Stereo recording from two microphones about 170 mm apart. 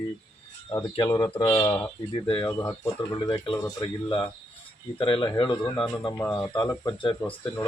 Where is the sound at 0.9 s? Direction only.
25° left (ahead or behind).